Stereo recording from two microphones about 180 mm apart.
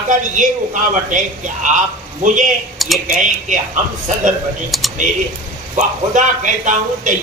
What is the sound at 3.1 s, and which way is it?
Speech, 45° right (ahead or behind).